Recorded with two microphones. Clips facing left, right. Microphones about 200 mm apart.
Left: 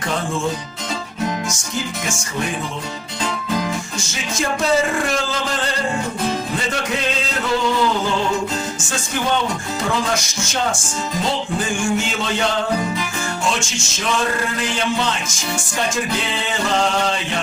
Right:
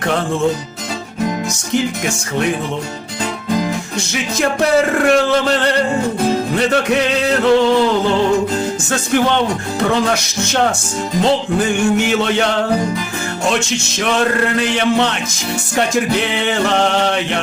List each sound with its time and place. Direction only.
1.5 s music: 65° right (ahead or behind)
3.9 s music: 65° right (ahead or behind)
8.9 s music: 65° right (ahead or behind)